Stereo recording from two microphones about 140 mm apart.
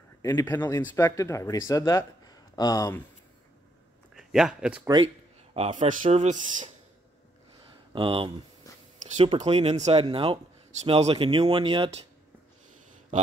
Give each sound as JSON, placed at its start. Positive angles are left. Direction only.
{"t": 0.2, "sound": "speech", "side_deg": 20}
{"t": 4.1, "sound": "speech", "side_deg": -5}
{"t": 5.0, "sound": "a sound", "side_deg": -45}
{"t": 5.7, "sound": "speech", "side_deg": -60}
{"t": 7.9, "sound": "speech", "side_deg": -40}
{"t": 8.6, "sound": "a sound", "side_deg": 25}
{"t": 9.1, "sound": "speech", "side_deg": -50}